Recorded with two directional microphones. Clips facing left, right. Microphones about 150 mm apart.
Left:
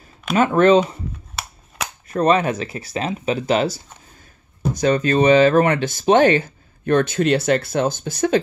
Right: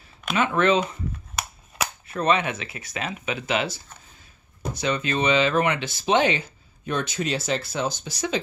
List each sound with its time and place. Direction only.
0.3 s speech: 40° left (ahead or behind)
2.0 s speech: 40° left (ahead or behind)